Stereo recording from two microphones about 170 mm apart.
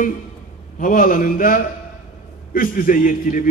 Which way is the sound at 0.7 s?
55° left (ahead or behind).